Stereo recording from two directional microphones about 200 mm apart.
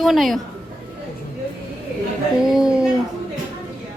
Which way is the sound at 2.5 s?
5° right (ahead or behind).